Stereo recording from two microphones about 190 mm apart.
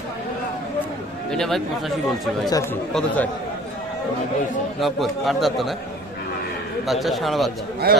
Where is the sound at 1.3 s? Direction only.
5° left (ahead or behind).